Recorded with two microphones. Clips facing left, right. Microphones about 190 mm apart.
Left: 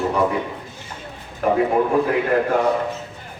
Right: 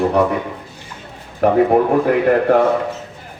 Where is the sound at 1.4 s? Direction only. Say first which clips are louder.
Right 5 dB; 50° right (ahead or behind).